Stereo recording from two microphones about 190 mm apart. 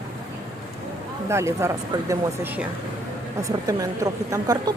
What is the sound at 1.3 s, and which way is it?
A woman's voice, 15° right (ahead or behind).